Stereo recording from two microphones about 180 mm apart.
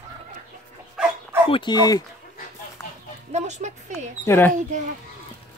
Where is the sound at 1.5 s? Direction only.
25° left (ahead or behind).